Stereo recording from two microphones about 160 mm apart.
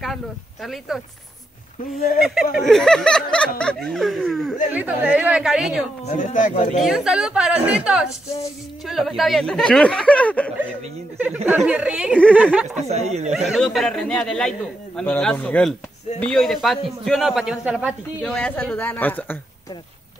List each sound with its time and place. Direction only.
0.0 s speech: centre (ahead or behind)
2.0 s speech: 65° left (ahead or behind)
2.5 s speech: centre (ahead or behind)
4.7 s a woman's voice: 10° right (ahead or behind)
6.0 s speech: 50° left (ahead or behind)
6.8 s speech: centre (ahead or behind)
11.5 s a woman's voice: 5° right (ahead or behind)
12.7 s speech: 40° right (ahead or behind)
13.3 s a woman's voice: centre (ahead or behind)
18.2 s a woman's voice: 5° left (ahead or behind)